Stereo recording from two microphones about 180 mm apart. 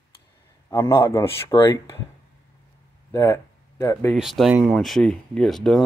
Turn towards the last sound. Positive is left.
turn(degrees=0)  # may be behind; listen again after turning